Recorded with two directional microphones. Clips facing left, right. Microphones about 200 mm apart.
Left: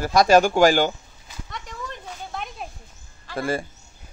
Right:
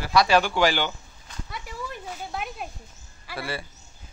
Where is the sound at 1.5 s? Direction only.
5° right (ahead or behind).